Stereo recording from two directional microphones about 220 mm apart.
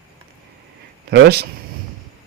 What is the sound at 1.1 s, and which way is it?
Speech, 45° right (ahead or behind).